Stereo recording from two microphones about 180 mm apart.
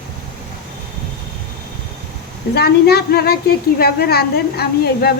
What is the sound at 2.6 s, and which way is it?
A woman's voice, 60° left (ahead or behind).